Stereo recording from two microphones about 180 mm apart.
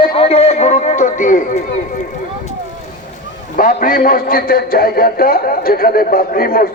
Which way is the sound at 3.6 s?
50° left (ahead or behind).